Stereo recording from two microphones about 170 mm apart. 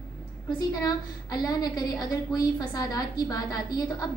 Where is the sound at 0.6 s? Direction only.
20° left (ahead or behind).